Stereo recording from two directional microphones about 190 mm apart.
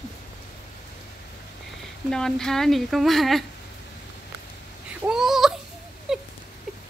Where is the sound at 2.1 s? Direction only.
5° left (ahead or behind).